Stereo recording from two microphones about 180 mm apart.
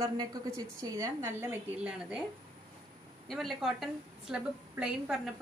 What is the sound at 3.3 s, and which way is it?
A woman's voice, centre (ahead or behind).